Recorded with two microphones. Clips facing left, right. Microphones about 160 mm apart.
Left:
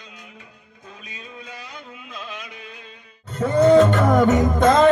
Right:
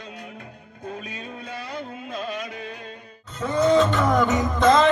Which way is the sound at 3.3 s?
50° left (ahead or behind).